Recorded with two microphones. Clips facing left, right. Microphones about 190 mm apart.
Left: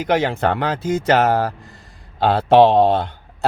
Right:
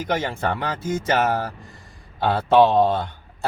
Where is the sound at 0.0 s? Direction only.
65° left (ahead or behind).